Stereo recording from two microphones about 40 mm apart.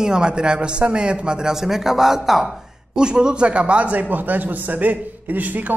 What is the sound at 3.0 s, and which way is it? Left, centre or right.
A man's voice, right.